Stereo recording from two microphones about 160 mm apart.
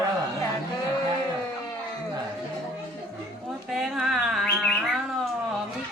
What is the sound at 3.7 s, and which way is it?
Bird, centre (ahead or behind).